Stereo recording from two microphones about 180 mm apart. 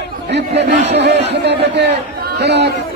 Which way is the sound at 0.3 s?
70° right (ahead or behind).